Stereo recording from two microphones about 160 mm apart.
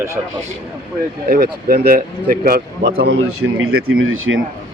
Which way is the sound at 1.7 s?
65° right (ahead or behind).